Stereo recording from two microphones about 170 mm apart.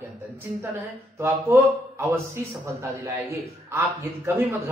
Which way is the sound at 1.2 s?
15° right (ahead or behind).